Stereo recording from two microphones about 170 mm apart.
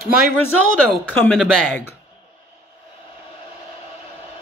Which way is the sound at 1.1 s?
10° left (ahead or behind).